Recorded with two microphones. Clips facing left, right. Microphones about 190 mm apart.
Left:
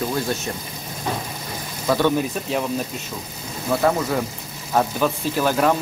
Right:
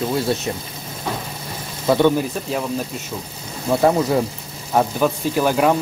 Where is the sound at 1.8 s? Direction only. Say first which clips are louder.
Right 4 dB; 25° right (ahead or behind).